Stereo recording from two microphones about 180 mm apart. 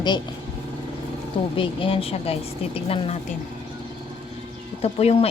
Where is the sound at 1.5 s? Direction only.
30° left (ahead or behind).